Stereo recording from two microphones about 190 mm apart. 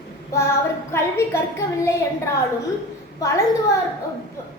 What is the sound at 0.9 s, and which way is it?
A woman's voice, 15° left (ahead or behind).